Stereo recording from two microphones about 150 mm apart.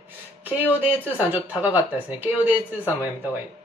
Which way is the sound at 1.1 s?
10° right (ahead or behind).